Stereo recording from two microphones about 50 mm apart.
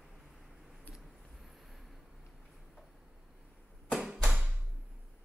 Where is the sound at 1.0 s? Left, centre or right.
Centre.